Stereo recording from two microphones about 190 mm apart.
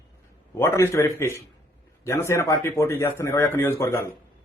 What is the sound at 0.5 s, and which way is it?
A man's voice, 15° left (ahead or behind).